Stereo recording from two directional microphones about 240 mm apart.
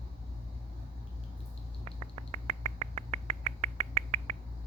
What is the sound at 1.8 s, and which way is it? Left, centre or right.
Finger snapping, right.